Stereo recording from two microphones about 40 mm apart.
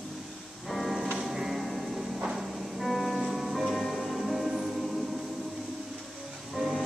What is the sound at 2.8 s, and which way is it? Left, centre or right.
Music, centre.